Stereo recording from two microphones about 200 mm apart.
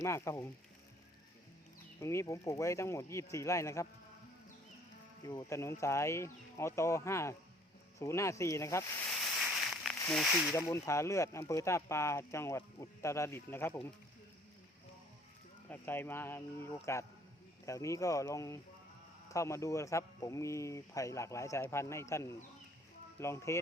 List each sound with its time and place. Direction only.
0.0 s speech: 15° left (ahead or behind)
2.0 s speech: 15° left (ahead or behind)
5.3 s speech: 15° left (ahead or behind)
9.1 s a sound: centre (ahead or behind)
10.0 s speech: 5° left (ahead or behind)
10.5 s speech: 15° left (ahead or behind)
15.7 s speech: 10° left (ahead or behind)